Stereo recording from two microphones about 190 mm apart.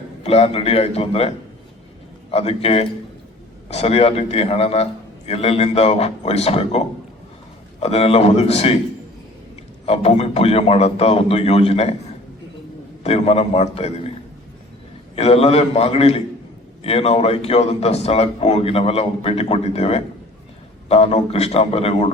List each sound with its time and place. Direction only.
0.2 s speech: 30° left (ahead or behind)
2.3 s speech: 30° left (ahead or behind)
9.8 s speech: 30° left (ahead or behind)
13.0 s speech: 35° left (ahead or behind)
15.1 s speech: 30° left (ahead or behind)